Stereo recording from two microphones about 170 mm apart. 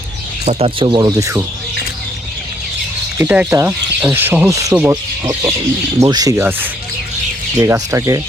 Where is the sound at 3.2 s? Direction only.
10° right (ahead or behind).